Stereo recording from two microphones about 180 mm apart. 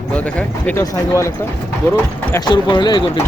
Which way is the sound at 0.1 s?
5° left (ahead or behind).